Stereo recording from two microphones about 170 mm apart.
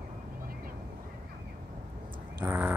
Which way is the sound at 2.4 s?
10° right (ahead or behind).